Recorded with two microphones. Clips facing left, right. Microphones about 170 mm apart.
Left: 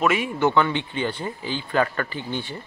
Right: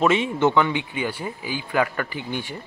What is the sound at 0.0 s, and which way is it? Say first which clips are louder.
Speech: right 2 dB; 25° right (ahead or behind).